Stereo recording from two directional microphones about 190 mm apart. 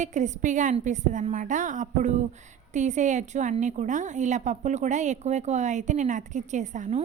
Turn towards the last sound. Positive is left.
turn(degrees=-40)  # may be behind; listen again after turning